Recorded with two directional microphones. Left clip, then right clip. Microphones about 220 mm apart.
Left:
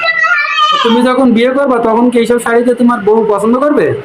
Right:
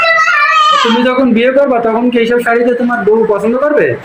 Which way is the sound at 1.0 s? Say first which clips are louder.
Left 1 dB; 15° left (ahead or behind).